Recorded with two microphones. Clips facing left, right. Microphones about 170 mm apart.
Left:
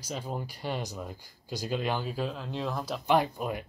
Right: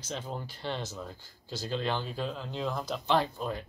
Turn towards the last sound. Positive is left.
turn(degrees=15)  # may be behind; listen again after turning